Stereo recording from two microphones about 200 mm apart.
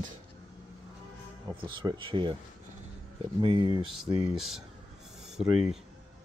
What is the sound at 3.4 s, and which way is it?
Speech, 25° right (ahead or behind).